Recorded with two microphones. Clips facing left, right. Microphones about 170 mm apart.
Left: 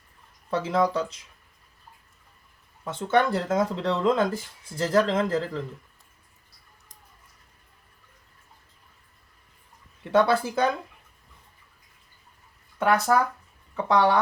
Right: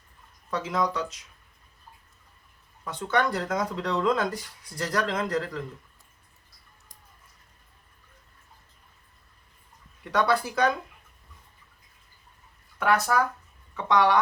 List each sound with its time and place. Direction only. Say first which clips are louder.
0.5 s speech: left 4 dB; 30° left (ahead or behind)
2.8 s speech: left 3 dB; 25° left (ahead or behind)
10.0 s speech: left 4 dB; 25° left (ahead or behind)
12.8 s speech: left 2 dB; 30° left (ahead or behind)